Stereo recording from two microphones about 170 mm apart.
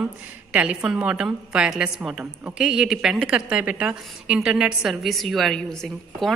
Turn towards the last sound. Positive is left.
turn(degrees=0)  # may be behind; listen again after turning